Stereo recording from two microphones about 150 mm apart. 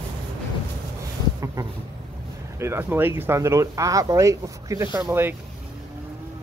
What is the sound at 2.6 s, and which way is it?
Speech, 15° right (ahead or behind).